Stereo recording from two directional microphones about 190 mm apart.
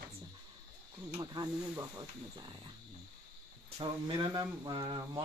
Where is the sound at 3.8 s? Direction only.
25° right (ahead or behind).